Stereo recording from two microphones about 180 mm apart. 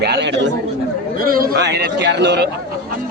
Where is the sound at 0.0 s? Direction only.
70° right (ahead or behind).